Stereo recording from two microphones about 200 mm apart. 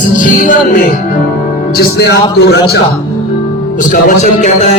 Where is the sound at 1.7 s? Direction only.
55° left (ahead or behind).